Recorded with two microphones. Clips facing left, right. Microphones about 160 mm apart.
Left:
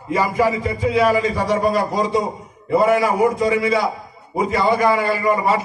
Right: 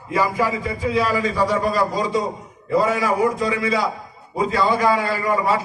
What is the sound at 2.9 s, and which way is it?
A man's voice, 20° left (ahead or behind).